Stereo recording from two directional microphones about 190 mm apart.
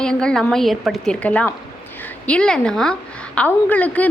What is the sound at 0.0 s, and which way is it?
A woman's voice, 5° left (ahead or behind).